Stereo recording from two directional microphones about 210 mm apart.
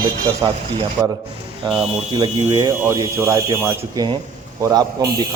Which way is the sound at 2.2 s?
15° right (ahead or behind).